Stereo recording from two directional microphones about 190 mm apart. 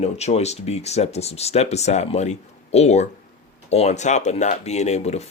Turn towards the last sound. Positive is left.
turn(degrees=35)  # may be behind; listen again after turning